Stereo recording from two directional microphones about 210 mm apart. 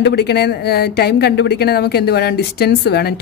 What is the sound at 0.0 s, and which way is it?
A woman's voice, 50° left (ahead or behind).